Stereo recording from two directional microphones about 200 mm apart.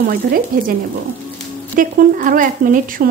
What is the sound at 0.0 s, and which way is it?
Speech, 45° right (ahead or behind).